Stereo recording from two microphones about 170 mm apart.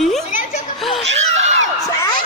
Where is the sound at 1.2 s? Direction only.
40° right (ahead or behind).